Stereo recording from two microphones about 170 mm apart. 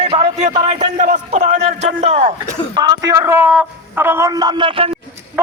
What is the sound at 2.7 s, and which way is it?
Speech, 25° right (ahead or behind).